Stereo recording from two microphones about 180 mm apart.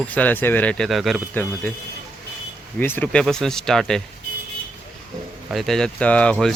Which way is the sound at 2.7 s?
10° left (ahead or behind).